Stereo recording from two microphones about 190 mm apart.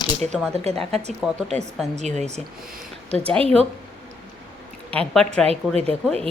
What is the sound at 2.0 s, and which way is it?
Speech, 35° right (ahead or behind).